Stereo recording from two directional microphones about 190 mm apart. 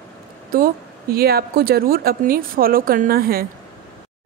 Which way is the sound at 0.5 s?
50° right (ahead or behind).